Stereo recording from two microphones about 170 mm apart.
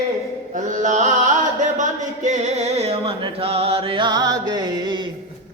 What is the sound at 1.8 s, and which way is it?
Music, 45° right (ahead or behind).